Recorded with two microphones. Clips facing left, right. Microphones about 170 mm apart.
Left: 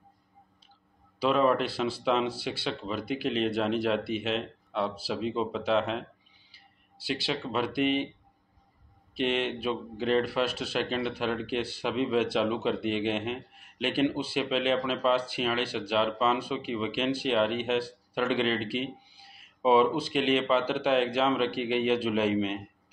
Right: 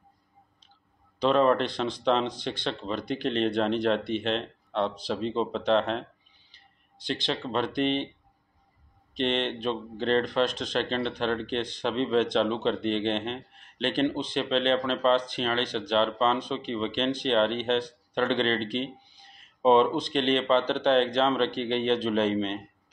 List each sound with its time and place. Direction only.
1.2 s speech: 5° left (ahead or behind)
6.5 s a sound: 5° left (ahead or behind)
7.5 s speech: 5° left (ahead or behind)
9.1 s speech: 10° left (ahead or behind)